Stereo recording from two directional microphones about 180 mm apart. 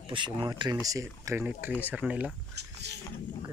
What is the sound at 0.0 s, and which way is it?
Speech, 25° right (ahead or behind).